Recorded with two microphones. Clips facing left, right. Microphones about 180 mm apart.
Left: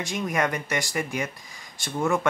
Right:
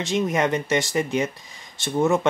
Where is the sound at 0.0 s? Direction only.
20° right (ahead or behind).